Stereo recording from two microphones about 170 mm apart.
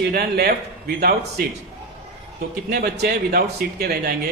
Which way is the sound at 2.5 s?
65° right (ahead or behind).